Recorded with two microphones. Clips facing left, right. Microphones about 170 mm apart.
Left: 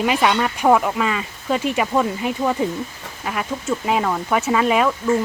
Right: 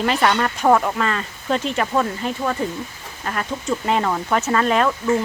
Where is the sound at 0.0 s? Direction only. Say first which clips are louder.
Left 1 dB; 5° left (ahead or behind).